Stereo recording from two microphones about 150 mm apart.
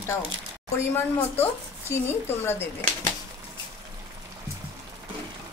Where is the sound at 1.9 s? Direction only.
15° left (ahead or behind).